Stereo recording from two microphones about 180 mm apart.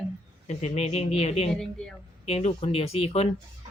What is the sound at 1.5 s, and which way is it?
Speech, 5° left (ahead or behind).